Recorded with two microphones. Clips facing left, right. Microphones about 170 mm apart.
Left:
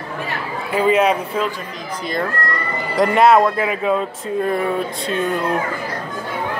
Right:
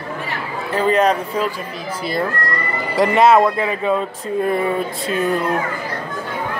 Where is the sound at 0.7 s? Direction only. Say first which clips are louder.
Even; 5° left (ahead or behind).